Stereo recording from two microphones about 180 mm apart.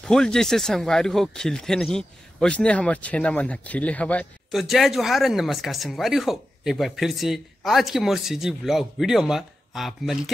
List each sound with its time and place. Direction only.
0.0 s speech: 5° left (ahead or behind)